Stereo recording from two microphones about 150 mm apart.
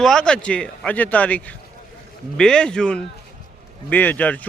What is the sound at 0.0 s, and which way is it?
Speech, 5° left (ahead or behind).